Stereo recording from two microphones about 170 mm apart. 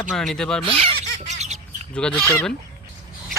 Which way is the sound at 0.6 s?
35° right (ahead or behind).